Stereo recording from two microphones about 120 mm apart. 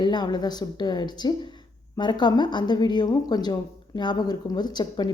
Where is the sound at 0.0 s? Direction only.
35° left (ahead or behind).